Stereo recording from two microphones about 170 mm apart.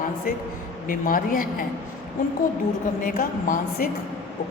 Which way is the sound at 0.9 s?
55° left (ahead or behind).